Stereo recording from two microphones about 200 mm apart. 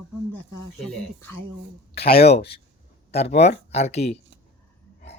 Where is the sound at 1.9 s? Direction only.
50° left (ahead or behind).